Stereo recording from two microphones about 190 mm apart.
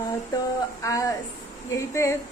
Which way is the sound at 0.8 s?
20° left (ahead or behind).